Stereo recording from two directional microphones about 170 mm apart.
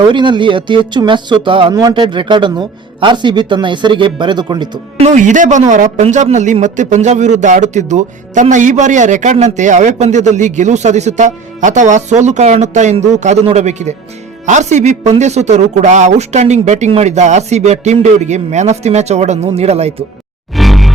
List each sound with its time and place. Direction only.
0.1 s speech: 30° right (ahead or behind)
5.0 s a man's voice: 45° right (ahead or behind)
20.6 s music: centre (ahead or behind)